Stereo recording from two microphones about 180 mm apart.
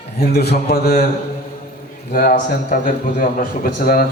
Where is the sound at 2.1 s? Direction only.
50° left (ahead or behind).